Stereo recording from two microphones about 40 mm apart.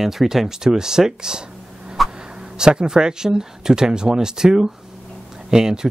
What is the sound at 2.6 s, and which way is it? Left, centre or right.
Speech, centre.